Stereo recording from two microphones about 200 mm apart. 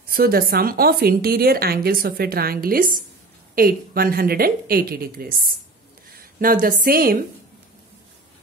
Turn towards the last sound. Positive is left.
turn(degrees=-45)  # may be behind; listen again after turning